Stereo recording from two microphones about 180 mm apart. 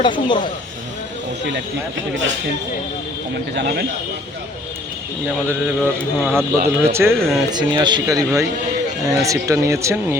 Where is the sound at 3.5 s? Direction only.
70° right (ahead or behind).